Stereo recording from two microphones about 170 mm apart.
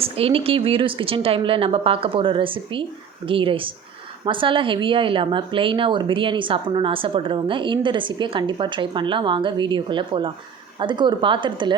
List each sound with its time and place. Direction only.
0.0 s speech: 35° right (ahead or behind)